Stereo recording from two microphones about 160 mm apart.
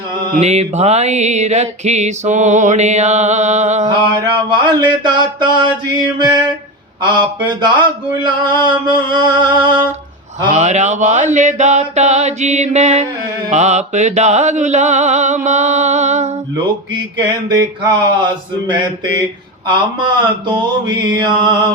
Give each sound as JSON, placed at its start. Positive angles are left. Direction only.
{"t": 0.3, "sound": "mantra", "side_deg": -45}
{"t": 4.4, "sound": "mantra", "side_deg": -30}
{"t": 10.5, "sound": "mantra", "side_deg": -45}
{"t": 17.5, "sound": "mantra", "side_deg": -25}